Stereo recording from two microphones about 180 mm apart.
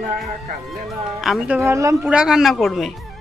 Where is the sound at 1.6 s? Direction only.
15° right (ahead or behind).